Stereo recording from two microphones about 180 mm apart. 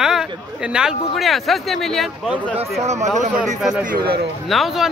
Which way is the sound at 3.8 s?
55° right (ahead or behind).